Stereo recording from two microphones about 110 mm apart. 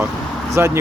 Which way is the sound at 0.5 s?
25° right (ahead or behind).